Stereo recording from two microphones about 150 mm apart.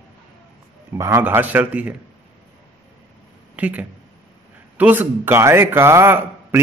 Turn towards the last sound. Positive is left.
turn(degrees=-15)  # may be behind; listen again after turning